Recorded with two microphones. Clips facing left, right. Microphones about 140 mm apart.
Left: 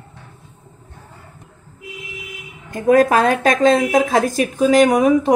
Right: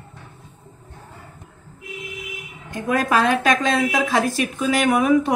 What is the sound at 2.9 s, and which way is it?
A woman's voice, 45° left (ahead or behind).